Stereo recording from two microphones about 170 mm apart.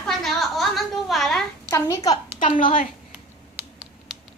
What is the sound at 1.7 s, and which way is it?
Speech, 20° left (ahead or behind).